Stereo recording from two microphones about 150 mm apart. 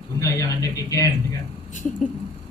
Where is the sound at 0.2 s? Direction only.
20° left (ahead or behind).